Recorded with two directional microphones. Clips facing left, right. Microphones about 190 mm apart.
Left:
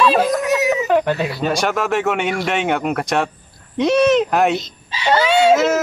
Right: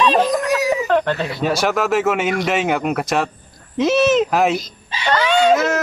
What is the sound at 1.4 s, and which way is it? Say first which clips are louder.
A man's voice: right 1 dB; centre (ahead or behind).